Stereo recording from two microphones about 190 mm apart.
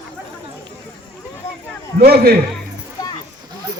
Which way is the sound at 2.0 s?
55° right (ahead or behind).